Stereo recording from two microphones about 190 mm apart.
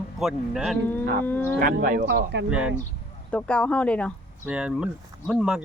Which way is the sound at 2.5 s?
5° right (ahead or behind).